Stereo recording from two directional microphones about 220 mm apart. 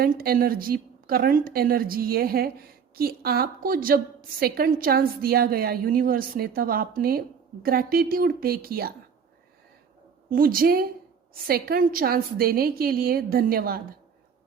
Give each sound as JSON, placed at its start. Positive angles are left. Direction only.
{"t": 0.0, "sound": "a woman's voice", "side_deg": -45}
{"t": 10.2, "sound": "a woman's voice", "side_deg": -40}